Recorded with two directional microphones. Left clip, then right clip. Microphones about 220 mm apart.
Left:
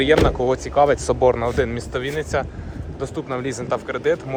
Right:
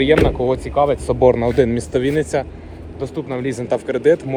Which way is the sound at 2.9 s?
55° left (ahead or behind).